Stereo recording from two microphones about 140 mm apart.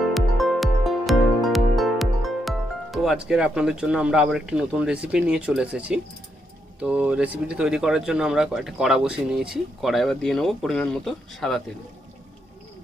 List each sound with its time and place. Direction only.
0.1 s music: centre (ahead or behind)
3.3 s speech: 5° right (ahead or behind)